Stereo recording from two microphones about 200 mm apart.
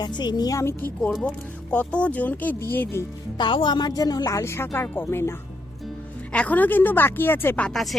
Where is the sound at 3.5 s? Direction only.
25° left (ahead or behind).